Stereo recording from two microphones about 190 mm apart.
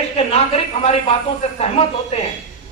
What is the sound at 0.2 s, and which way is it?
A man's voice, 30° left (ahead or behind).